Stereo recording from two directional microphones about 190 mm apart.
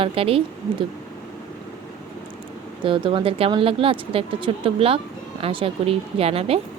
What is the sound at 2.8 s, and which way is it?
A woman's voice, 25° right (ahead or behind).